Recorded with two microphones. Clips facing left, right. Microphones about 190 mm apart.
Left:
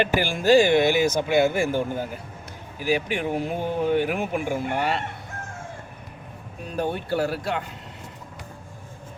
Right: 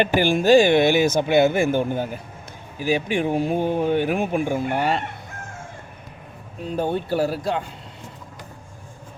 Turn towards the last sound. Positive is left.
turn(degrees=-20)  # may be behind; listen again after turning